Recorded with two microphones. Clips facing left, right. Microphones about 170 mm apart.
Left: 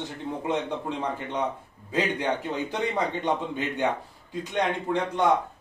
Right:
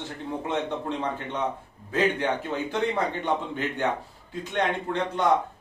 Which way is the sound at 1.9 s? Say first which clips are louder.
Right 2 dB; 15° left (ahead or behind).